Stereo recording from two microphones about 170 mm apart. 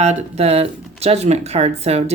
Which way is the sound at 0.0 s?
40° right (ahead or behind).